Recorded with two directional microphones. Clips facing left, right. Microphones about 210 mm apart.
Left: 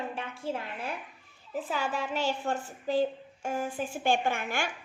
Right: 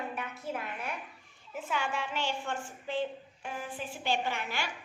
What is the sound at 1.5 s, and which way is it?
A child's voice, 35° left (ahead or behind).